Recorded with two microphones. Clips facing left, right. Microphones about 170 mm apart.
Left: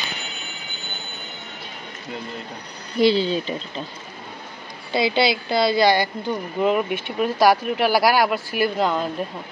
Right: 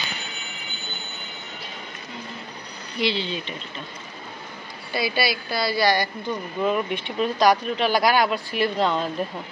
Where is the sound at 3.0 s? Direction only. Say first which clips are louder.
Left 8 dB; 40° left (ahead or behind).